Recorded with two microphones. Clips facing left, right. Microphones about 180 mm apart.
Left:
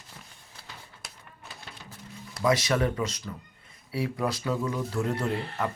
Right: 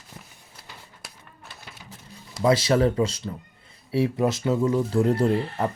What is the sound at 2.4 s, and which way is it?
Speech, 30° right (ahead or behind).